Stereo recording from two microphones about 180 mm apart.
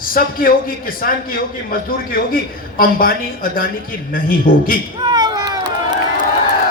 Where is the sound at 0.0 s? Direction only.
50° left (ahead or behind).